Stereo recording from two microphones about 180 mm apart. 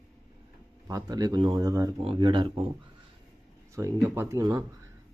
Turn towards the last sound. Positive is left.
turn(degrees=-20)  # may be behind; listen again after turning